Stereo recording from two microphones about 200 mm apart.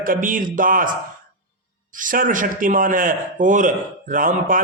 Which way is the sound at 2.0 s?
40° right (ahead or behind).